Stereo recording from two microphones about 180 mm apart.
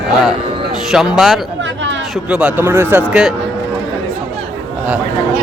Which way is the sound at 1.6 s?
90° right.